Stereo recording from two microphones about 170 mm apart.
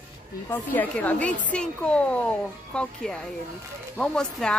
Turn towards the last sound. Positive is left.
turn(degrees=5)  # may be behind; listen again after turning